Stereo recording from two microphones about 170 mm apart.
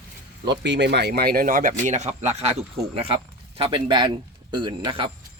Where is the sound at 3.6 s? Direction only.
30° right (ahead or behind).